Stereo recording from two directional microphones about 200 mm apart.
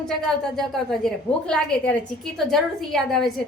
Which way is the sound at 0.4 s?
Centre (ahead or behind).